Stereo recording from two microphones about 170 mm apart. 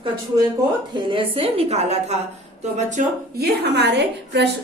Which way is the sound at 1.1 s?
35° right (ahead or behind).